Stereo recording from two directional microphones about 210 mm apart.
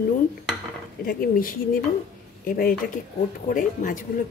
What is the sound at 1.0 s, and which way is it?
Speech, 45° left (ahead or behind).